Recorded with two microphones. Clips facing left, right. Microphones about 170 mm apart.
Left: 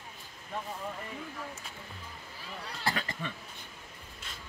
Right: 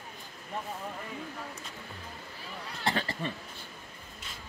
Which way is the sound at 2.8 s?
30° right (ahead or behind).